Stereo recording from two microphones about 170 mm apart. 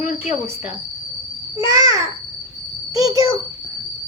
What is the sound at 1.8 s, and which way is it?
A child's voice, 20° right (ahead or behind).